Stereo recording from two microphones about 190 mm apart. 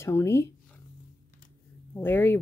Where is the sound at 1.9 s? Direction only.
10° left (ahead or behind).